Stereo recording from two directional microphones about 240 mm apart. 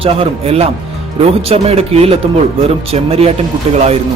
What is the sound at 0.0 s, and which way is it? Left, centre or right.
Speech, right.